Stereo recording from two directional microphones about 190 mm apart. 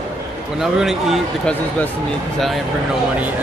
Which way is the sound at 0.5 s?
Centre (ahead or behind).